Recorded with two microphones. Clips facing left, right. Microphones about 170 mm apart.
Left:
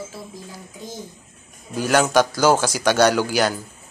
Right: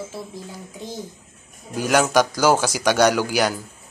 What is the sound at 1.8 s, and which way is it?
Speech, 10° right (ahead or behind).